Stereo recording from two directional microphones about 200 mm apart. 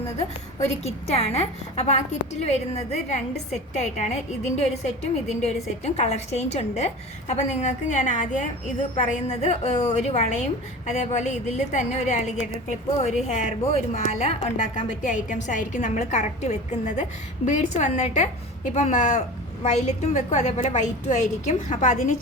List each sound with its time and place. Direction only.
0.8 s a woman's voice: 30° left (ahead or behind)